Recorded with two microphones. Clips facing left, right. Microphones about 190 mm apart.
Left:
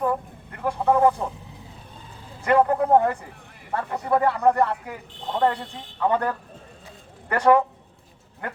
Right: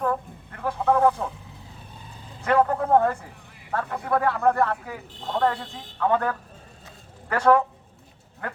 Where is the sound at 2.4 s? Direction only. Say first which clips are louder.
Left 2 dB; 10° left (ahead or behind).